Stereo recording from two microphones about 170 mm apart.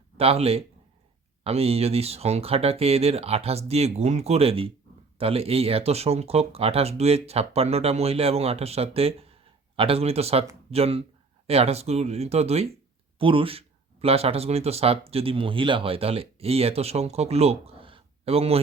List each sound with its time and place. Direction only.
0.2 s speech: 35° right (ahead or behind)